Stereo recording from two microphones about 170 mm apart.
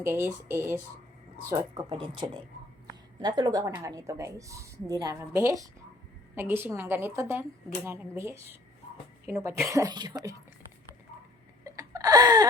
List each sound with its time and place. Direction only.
0.0 s a woman's voice: 15° right (ahead or behind)
1.9 s a woman's voice: 30° right (ahead or behind)
11.6 s a sound: 20° right (ahead or behind)